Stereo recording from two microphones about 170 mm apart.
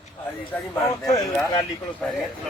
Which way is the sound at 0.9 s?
20° left (ahead or behind).